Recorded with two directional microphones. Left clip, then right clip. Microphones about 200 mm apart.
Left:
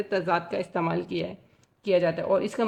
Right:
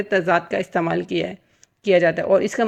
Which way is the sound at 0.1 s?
20° right (ahead or behind).